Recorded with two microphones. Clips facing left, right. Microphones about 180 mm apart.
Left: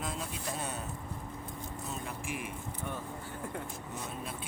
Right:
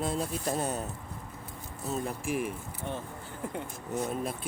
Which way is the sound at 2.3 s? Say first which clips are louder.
Right 7 dB; 35° right (ahead or behind).